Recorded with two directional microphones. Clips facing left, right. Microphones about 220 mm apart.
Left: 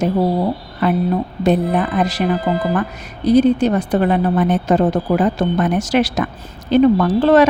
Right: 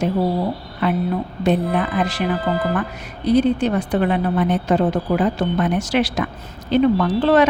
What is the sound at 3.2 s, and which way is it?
A woman's voice, 40° left (ahead or behind).